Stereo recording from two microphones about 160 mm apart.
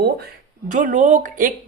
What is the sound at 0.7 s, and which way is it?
Speech, 55° right (ahead or behind).